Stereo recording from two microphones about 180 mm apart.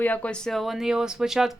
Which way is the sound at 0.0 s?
10° left (ahead or behind).